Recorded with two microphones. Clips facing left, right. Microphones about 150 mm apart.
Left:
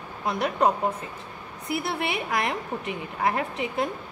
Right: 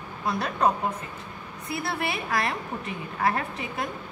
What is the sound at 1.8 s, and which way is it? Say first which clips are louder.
A woman's voice: right 2 dB; 20° left (ahead or behind).